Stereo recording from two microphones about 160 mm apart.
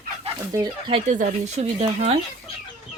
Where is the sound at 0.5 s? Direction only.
25° right (ahead or behind).